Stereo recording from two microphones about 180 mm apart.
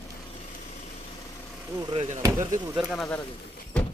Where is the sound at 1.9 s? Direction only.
40° right (ahead or behind).